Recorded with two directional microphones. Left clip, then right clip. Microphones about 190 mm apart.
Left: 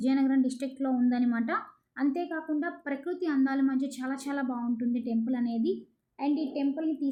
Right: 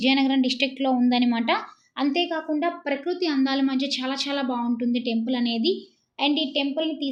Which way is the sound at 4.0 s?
45° right (ahead or behind).